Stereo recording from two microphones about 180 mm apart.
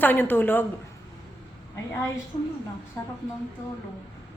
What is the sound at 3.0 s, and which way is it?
Speech, 20° left (ahead or behind).